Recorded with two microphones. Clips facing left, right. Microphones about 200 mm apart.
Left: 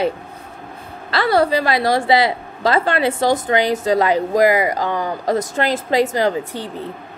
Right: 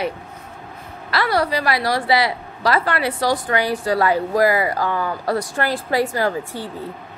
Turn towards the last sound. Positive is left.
turn(degrees=20)  # may be behind; listen again after turning